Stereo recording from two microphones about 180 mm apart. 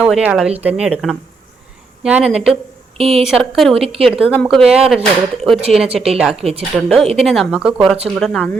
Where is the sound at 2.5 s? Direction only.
35° right (ahead or behind).